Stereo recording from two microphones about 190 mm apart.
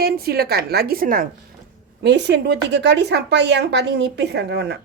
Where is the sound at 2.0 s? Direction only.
65° right (ahead or behind).